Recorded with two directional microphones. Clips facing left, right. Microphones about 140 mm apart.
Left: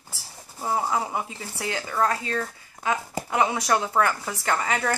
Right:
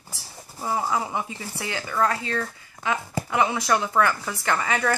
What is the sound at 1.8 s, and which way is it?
Speech, 25° left (ahead or behind).